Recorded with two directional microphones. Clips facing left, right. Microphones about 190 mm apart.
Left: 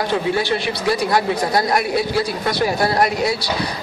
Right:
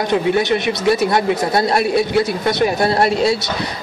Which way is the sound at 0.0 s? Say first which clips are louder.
Right 3 dB; 20° right (ahead or behind).